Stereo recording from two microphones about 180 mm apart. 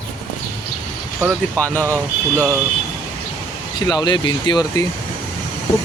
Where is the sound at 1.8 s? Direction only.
15° right (ahead or behind).